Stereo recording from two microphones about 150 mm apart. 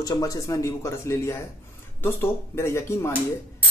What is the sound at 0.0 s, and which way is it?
Speech, 25° left (ahead or behind).